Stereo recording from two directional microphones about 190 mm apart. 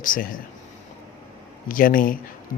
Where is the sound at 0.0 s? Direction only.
45° left (ahead or behind).